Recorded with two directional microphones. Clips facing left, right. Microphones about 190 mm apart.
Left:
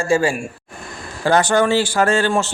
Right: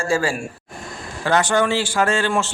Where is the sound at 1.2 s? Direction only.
35° left (ahead or behind).